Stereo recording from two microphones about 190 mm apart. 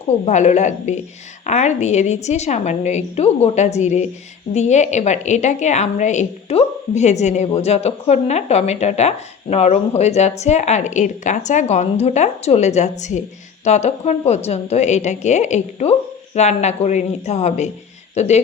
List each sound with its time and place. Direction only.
0.1 s a woman's voice: 35° left (ahead or behind)